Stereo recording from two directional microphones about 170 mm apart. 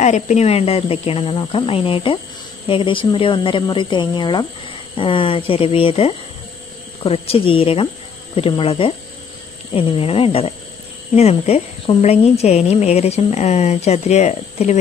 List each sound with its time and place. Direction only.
0.0 s a woman's voice: 45° left (ahead or behind)